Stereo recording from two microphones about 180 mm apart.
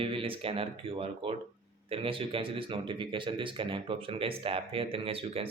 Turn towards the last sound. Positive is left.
turn(degrees=-30)  # may be behind; listen again after turning